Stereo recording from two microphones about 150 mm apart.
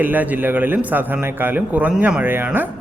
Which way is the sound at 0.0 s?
10° right (ahead or behind).